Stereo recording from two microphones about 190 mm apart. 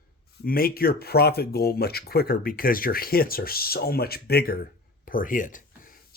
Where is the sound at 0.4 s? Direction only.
50° left (ahead or behind).